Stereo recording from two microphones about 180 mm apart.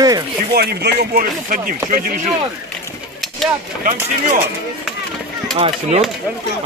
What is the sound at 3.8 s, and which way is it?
Speech, 50° right (ahead or behind).